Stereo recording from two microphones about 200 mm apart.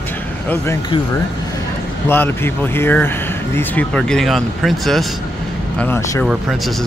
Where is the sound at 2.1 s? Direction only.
10° left (ahead or behind).